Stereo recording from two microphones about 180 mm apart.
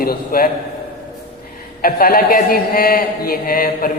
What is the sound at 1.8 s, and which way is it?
A man's voice, 55° left (ahead or behind).